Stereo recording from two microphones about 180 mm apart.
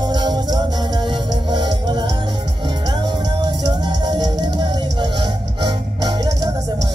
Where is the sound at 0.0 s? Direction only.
25° right (ahead or behind).